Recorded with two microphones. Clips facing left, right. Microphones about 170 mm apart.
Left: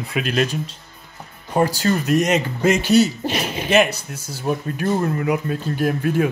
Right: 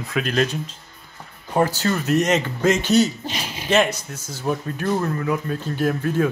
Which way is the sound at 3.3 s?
65° left (ahead or behind).